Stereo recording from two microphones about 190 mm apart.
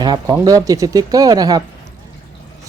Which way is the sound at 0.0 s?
25° right (ahead or behind).